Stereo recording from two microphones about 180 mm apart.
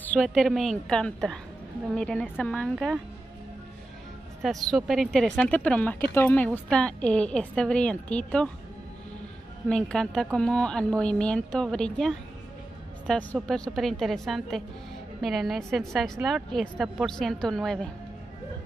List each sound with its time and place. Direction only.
0.1 s a woman's voice: 5° left (ahead or behind)
4.4 s a woman's voice: centre (ahead or behind)
9.7 s a woman's voice: 5° left (ahead or behind)